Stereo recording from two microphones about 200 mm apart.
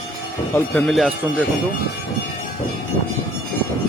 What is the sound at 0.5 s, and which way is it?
Speech, 5° left (ahead or behind).